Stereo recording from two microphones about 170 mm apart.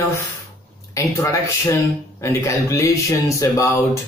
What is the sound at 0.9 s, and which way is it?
Speech, 20° left (ahead or behind).